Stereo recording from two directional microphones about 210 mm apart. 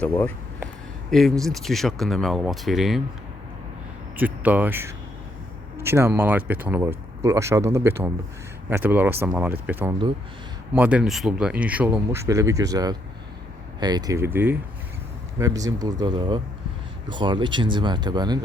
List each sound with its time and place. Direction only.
0.0 s speech: 10° left (ahead or behind)
4.2 s speech: 10° right (ahead or behind)